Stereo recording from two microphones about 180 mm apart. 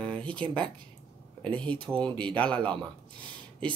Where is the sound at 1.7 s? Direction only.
30° right (ahead or behind).